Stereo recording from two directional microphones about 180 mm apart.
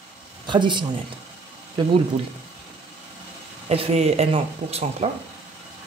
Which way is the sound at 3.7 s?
35° right (ahead or behind).